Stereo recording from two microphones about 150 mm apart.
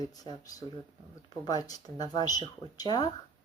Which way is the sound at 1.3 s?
25° left (ahead or behind).